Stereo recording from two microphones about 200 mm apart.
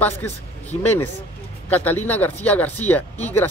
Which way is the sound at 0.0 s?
10° left (ahead or behind).